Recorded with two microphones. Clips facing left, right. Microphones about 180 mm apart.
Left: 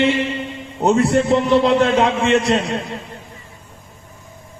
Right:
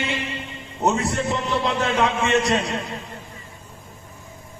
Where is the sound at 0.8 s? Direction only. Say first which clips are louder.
Left 7 dB; 60° left (ahead or behind).